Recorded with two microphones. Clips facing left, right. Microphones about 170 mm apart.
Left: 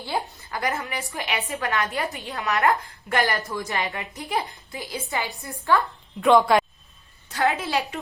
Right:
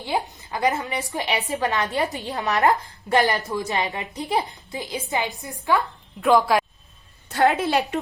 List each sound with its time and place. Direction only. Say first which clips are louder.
0.0 s a woman's voice: right 3 dB; 20° right (ahead or behind)
6.2 s speech: left 1 dB; centre (ahead or behind)
7.3 s a woman's voice: right 4 dB; 40° right (ahead or behind)